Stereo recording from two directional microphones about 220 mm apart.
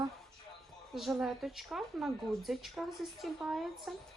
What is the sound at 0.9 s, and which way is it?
Speech, centre (ahead or behind).